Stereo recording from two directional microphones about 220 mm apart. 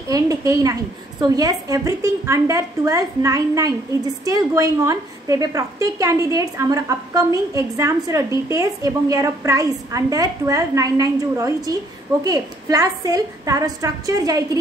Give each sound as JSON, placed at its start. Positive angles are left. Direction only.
{"t": 0.1, "sound": "a woman's voice", "side_deg": -15}